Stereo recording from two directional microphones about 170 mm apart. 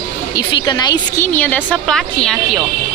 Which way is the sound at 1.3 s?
10° left (ahead or behind).